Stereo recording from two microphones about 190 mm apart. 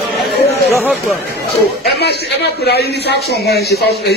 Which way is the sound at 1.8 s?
60° left (ahead or behind).